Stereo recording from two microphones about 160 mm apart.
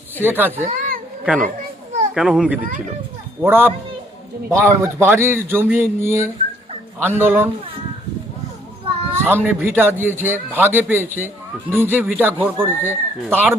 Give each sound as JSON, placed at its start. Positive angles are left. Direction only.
{"t": 0.2, "sound": "a man's voice", "side_deg": -10}
{"t": 0.6, "sound": "a sound", "side_deg": -55}
{"t": 2.1, "sound": "a child's voice", "side_deg": 0}
{"t": 9.1, "sound": "a man's voice", "side_deg": -15}